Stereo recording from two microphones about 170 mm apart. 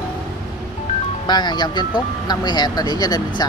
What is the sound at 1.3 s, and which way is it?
Speech, 25° left (ahead or behind).